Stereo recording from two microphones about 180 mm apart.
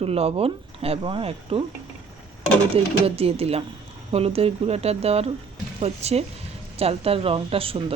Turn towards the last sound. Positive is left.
turn(degrees=-30)  # may be behind; listen again after turning